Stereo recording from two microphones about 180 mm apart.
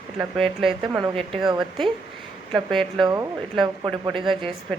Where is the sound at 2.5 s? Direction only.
Centre (ahead or behind).